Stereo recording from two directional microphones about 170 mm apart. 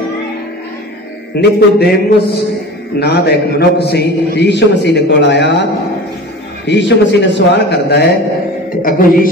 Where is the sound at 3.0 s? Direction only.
75° left (ahead or behind); by 5.5 s 90° left.